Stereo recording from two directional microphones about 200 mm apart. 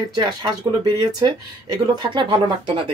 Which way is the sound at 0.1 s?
20° right (ahead or behind).